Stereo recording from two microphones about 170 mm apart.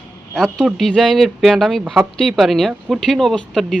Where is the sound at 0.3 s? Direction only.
Centre (ahead or behind).